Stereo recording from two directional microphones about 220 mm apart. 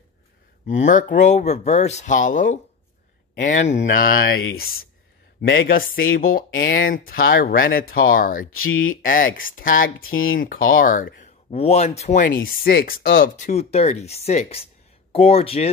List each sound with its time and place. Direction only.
0.7 s speech: 35° left (ahead or behind)
6.5 s speech: 60° left (ahead or behind)
6.9 s speech: 40° left (ahead or behind)
8.5 s speech: 70° left (ahead or behind)
9.0 s speech: 40° left (ahead or behind)